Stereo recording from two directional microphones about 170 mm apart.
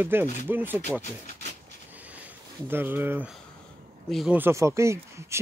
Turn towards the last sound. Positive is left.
turn(degrees=-15)  # may be behind; listen again after turning